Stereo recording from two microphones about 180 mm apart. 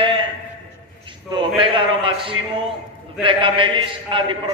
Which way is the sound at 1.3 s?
30° right (ahead or behind).